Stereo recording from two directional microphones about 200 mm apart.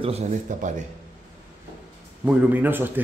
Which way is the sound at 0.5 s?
40° right (ahead or behind).